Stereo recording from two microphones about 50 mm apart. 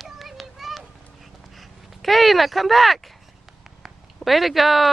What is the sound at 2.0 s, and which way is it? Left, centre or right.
Speech, centre.